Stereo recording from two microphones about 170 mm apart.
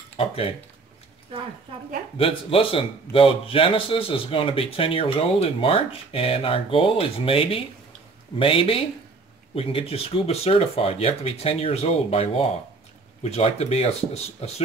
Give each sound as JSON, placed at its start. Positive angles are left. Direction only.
{"t": 2.1, "sound": "speech", "side_deg": 35}